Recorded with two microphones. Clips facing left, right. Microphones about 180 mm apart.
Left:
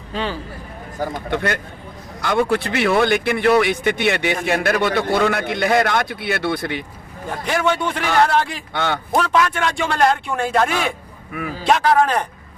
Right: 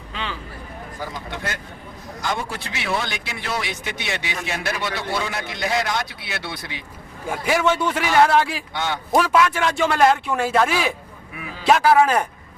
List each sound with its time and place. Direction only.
0.1 s speech: 40° left (ahead or behind)
0.9 s speech: 50° left (ahead or behind)
7.3 s a man's voice: 5° right (ahead or behind)
8.7 s speech: 55° left (ahead or behind)
9.1 s a man's voice: 5° right (ahead or behind)
11.3 s a man's voice: 45° left (ahead or behind)
11.6 s a man's voice: 5° right (ahead or behind)